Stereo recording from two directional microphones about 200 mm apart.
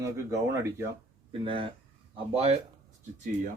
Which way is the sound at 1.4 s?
25° right (ahead or behind).